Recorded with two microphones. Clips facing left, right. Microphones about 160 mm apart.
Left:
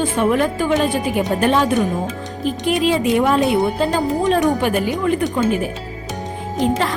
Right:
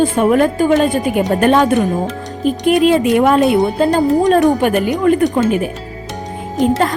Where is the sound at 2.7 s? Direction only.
55° right (ahead or behind).